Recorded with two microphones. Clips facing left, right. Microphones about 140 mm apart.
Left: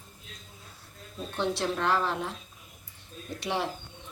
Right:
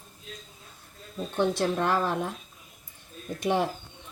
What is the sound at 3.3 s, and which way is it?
Speech, 50° right (ahead or behind).